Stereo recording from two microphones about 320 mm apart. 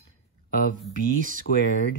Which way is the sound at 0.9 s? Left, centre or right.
Right.